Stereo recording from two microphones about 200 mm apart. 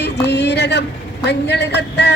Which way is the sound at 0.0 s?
60° left (ahead or behind).